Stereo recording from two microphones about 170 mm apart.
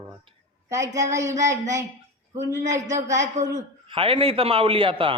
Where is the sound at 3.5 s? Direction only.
30° right (ahead or behind).